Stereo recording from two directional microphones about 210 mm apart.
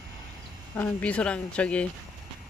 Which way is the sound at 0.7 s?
10° left (ahead or behind).